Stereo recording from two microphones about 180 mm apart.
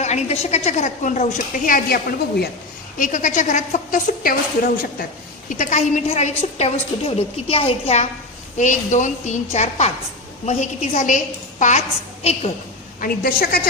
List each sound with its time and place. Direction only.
0.0 s a woman's voice: 40° left (ahead or behind); by 2.5 s 55° left (ahead or behind)
3.0 s a woman's voice: 45° left (ahead or behind)
13.0 s a woman's voice: 55° left (ahead or behind)